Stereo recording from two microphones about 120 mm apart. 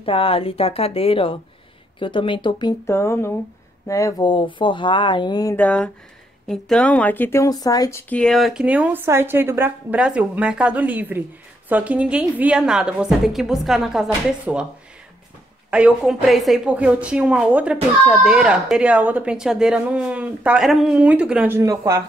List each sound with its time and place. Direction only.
0.0 s speech: 50° left (ahead or behind)
2.9 s speech: 20° left (ahead or behind)
4.3 s speech: 40° left (ahead or behind)
5.6 s speech: 10° left (ahead or behind); by 8.0 s 30° left (ahead or behind)
8.1 s speech: 5° left (ahead or behind)
8.6 s speech: 10° right (ahead or behind)
15.7 s speech: 10° right (ahead or behind)
21.5 s speech: 25° right (ahead or behind)